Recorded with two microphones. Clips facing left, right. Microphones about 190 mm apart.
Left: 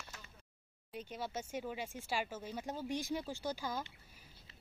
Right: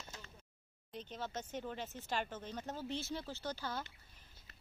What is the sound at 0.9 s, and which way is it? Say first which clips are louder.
Speech: left 2 dB; 10° left (ahead or behind).